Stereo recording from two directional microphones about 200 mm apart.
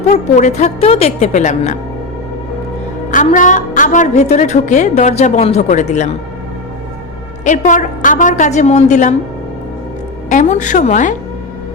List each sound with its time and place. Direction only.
0.3 s a woman's voice: 35° left (ahead or behind)
3.1 s a woman's voice: 40° left (ahead or behind)
7.4 s a woman's voice: 40° left (ahead or behind)
10.2 s a woman's voice: 40° left (ahead or behind)